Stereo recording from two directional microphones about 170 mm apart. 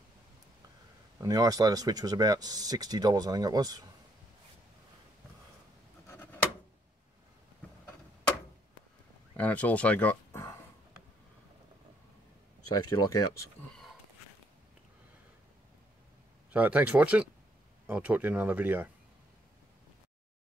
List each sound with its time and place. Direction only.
1.1 s speech: 20° right (ahead or behind)
9.4 s speech: 10° left (ahead or behind)
12.7 s speech: 20° left (ahead or behind)
16.5 s speech: 10° right (ahead or behind)